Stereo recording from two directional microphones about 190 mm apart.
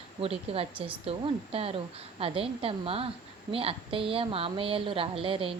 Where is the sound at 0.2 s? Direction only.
30° right (ahead or behind).